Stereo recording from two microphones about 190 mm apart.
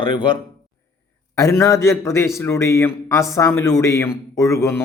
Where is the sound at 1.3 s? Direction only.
15° left (ahead or behind).